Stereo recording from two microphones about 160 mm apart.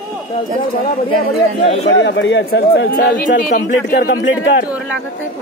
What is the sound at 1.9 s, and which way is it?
A man's voice, 90° left.